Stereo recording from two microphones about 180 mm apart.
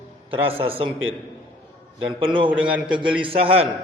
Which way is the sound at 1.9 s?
30° right (ahead or behind).